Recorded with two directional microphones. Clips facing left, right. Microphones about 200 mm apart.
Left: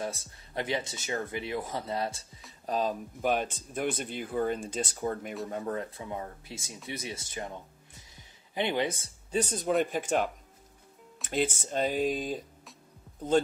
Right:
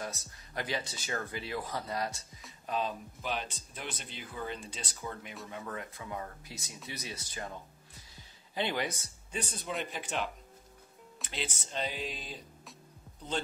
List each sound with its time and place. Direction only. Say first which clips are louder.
0.0 s speech: left 5 dB; 25° left (ahead or behind)
2.6 s speech: left 5 dB; 40° left (ahead or behind)
6.9 s music: left 5 dB; 25° left (ahead or behind)
9.4 s speech: left 10 dB; 45° left (ahead or behind)